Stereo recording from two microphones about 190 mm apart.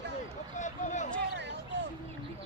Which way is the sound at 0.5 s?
40° left (ahead or behind).